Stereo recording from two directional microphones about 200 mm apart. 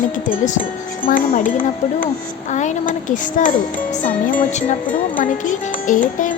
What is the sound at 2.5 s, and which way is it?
Speech, 40° left (ahead or behind).